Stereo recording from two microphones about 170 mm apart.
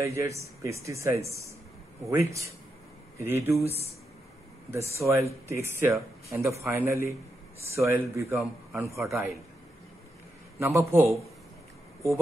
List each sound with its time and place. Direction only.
0.0 s speech: 15° right (ahead or behind)
4.6 s speech: 15° right (ahead or behind)
10.6 s speech: 15° right (ahead or behind)